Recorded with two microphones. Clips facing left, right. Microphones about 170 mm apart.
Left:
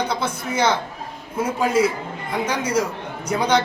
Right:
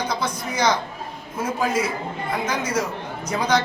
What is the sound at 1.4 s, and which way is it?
Speech, 10° left (ahead or behind).